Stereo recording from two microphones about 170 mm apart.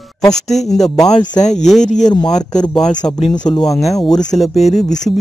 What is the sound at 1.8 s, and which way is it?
Speech, 45° left (ahead or behind).